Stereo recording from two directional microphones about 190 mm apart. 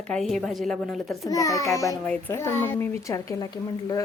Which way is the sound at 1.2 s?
15° left (ahead or behind).